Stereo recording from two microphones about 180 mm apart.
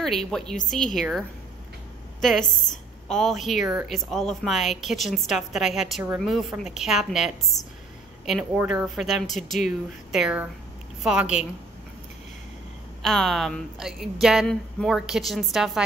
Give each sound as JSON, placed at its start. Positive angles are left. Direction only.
{"t": 0.0, "sound": "speech", "side_deg": 0}
{"t": 2.7, "sound": "speech", "side_deg": 5}
{"t": 13.0, "sound": "speech", "side_deg": 0}